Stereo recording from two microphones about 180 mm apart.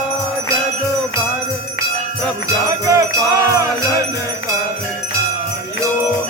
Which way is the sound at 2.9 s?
20° right (ahead or behind).